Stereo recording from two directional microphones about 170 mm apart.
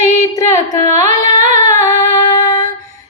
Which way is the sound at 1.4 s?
45° right (ahead or behind).